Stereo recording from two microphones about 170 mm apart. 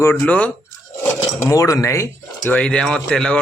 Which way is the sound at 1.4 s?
20° left (ahead or behind).